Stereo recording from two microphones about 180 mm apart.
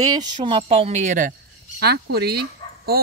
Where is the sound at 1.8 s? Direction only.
65° right (ahead or behind).